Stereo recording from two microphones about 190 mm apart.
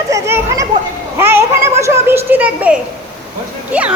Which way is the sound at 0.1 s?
15° right (ahead or behind).